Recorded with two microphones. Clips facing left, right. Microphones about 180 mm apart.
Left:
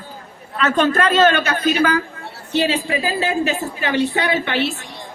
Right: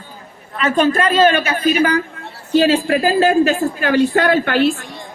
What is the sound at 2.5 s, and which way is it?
A woman's voice, 45° right (ahead or behind).